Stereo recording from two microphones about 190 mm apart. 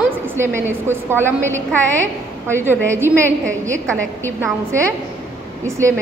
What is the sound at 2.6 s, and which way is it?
Speech, 10° right (ahead or behind).